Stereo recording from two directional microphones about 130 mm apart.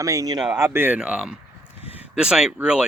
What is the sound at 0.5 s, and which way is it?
A man's voice, 20° right (ahead or behind).